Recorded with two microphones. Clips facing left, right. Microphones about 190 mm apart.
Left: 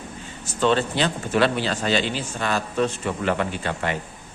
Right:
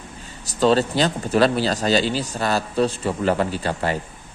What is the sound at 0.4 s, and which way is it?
Speech, 35° right (ahead or behind).